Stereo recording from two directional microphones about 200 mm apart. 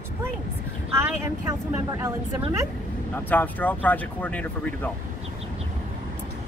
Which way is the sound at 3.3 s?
10° left (ahead or behind).